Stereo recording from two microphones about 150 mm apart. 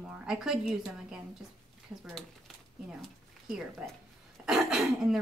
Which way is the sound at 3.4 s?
5° right (ahead or behind).